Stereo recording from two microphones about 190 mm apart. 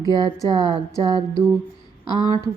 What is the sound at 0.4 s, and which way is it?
A woman's voice, 25° right (ahead or behind).